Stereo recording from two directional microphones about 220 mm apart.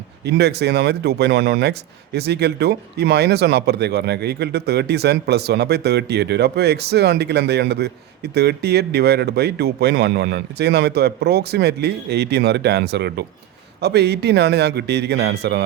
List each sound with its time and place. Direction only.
0.3 s speech: 50° right (ahead or behind)